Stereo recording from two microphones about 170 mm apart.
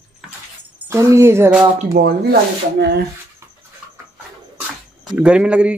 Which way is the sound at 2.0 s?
50° right (ahead or behind).